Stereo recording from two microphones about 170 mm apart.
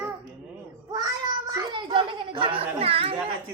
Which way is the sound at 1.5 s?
25° right (ahead or behind).